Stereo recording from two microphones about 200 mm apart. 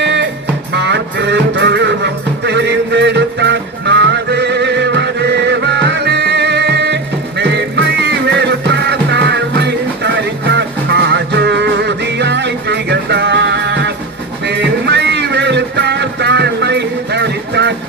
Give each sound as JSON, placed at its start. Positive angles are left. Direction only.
{"t": 0.0, "sound": "music", "side_deg": -60}